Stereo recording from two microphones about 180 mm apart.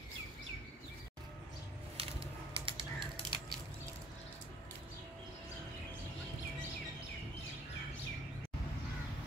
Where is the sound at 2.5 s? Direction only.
30° right (ahead or behind).